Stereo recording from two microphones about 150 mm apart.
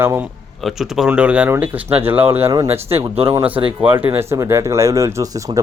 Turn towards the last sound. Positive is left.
turn(degrees=-25)  # may be behind; listen again after turning